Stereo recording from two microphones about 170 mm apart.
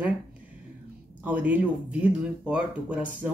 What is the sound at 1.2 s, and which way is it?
Speech, 10° right (ahead or behind).